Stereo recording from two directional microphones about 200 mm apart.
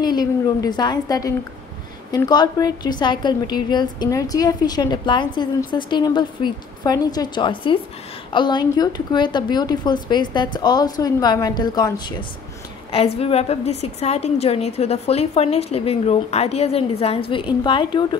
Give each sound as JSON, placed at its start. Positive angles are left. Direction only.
{"t": 0.0, "sound": "a woman's voice", "side_deg": 20}
{"t": 12.9, "sound": "a woman's voice", "side_deg": 30}